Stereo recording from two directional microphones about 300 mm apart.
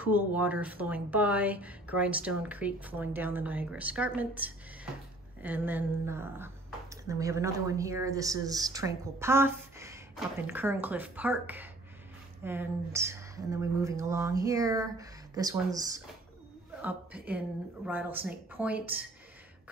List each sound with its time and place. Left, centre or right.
0.0 s speech: centre
17.8 s speech: centre